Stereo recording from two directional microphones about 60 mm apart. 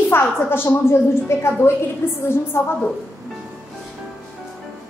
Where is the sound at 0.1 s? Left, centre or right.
Left.